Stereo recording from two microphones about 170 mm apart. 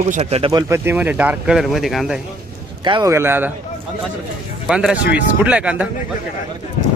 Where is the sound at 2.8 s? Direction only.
25° right (ahead or behind).